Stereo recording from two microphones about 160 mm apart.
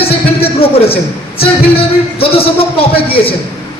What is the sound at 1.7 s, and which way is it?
Speech, 35° left (ahead or behind).